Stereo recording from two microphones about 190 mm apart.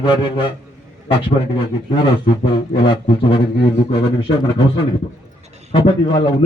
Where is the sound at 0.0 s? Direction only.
25° left (ahead or behind).